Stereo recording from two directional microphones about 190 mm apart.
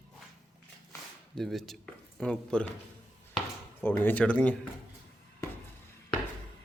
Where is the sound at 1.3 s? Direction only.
Centre (ahead or behind).